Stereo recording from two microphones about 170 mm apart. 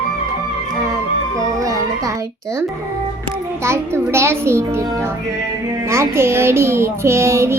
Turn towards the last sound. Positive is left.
turn(degrees=-15)  # may be behind; listen again after turning